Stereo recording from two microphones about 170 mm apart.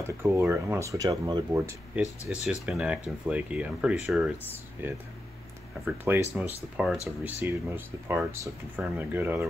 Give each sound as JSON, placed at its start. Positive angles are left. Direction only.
{"t": 0.0, "sound": "speech", "side_deg": -15}
{"t": 2.2, "sound": "speech", "side_deg": 0}